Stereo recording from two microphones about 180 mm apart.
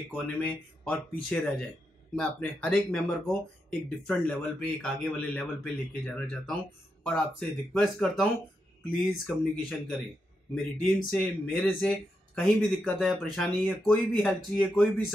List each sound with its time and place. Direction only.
0.1 s speech: 10° left (ahead or behind)